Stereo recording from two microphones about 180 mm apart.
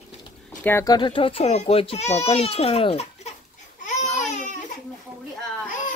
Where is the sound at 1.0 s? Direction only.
25° left (ahead or behind).